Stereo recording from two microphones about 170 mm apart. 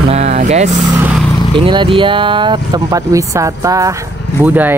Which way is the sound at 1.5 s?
30° right (ahead or behind).